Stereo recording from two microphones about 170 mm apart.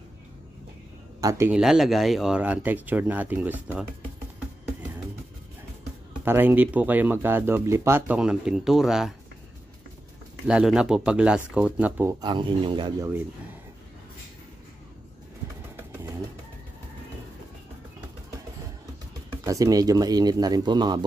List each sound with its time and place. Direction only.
1.5 s speech: centre (ahead or behind)
6.2 s speech: 10° right (ahead or behind)
10.4 s speech: 5° right (ahead or behind)
12.2 s speech: 25° right (ahead or behind)
15.7 s bird: 15° right (ahead or behind)
19.4 s speech: 20° right (ahead or behind)